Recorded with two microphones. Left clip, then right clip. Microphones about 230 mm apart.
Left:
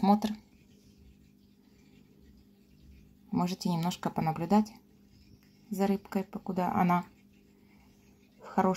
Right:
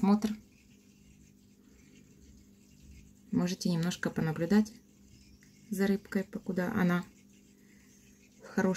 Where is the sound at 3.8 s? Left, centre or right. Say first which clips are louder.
Left 3 dB; left.